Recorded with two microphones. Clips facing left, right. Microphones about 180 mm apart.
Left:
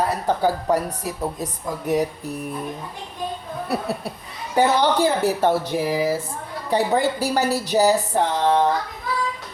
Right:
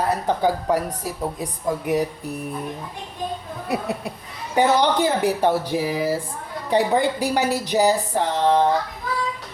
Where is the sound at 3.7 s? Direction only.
15° right (ahead or behind).